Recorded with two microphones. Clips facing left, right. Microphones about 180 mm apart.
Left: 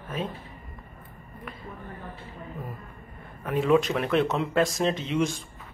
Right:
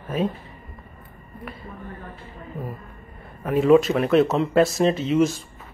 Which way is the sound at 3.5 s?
Centre (ahead or behind).